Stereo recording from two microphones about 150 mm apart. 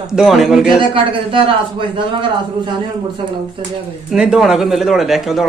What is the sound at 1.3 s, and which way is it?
A man's voice, 35° right (ahead or behind).